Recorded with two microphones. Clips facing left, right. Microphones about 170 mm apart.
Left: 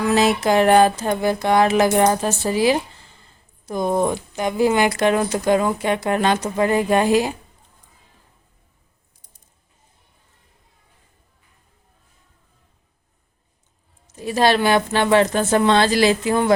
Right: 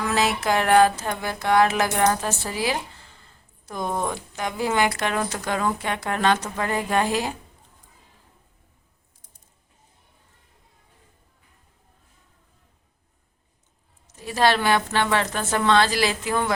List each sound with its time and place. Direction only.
0.0 s speech: 20° left (ahead or behind)
14.1 s speech: 20° left (ahead or behind)